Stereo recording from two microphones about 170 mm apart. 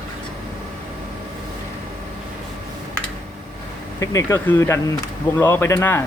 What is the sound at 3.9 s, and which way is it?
Speech, 15° left (ahead or behind).